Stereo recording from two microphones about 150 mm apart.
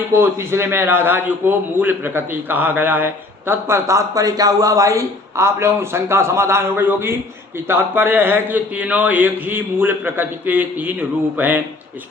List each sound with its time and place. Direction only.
0.1 s a man's voice: 15° right (ahead or behind)